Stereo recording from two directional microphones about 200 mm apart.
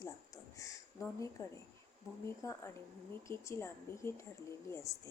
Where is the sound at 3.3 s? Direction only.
15° left (ahead or behind).